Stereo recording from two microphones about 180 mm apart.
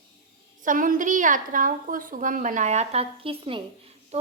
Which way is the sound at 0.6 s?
45° right (ahead or behind).